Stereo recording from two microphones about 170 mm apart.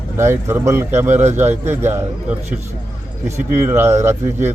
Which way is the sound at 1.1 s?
45° right (ahead or behind).